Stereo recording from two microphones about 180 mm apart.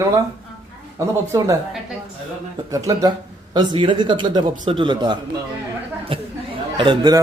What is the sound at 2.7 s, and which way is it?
A man's voice, 20° right (ahead or behind).